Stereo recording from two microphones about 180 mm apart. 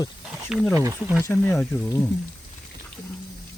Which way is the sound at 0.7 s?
15° right (ahead or behind).